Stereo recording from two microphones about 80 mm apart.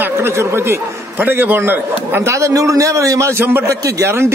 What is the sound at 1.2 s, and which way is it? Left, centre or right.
A man's voice, right.